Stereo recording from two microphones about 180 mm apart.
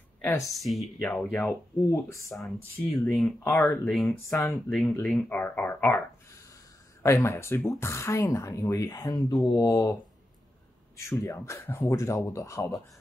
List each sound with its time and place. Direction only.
0.2 s speech: 15° left (ahead or behind)
0.6 s speech: centre (ahead or behind); by 9.9 s 15° left (ahead or behind)
11.0 s speech: 15° left (ahead or behind)